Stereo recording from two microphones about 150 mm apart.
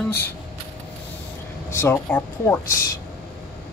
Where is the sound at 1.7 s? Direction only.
15° left (ahead or behind).